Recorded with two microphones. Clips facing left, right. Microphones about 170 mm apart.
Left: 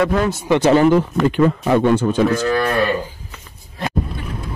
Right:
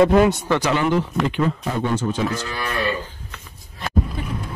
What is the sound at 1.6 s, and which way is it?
Speech, 70° left (ahead or behind).